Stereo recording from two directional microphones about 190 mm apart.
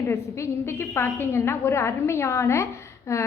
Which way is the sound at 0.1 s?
15° left (ahead or behind).